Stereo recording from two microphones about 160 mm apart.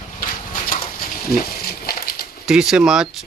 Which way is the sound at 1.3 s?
70° left (ahead or behind).